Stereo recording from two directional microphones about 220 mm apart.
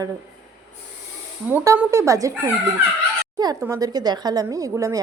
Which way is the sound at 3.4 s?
15° right (ahead or behind).